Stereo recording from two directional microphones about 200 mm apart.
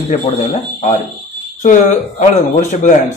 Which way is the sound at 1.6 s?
40° left (ahead or behind).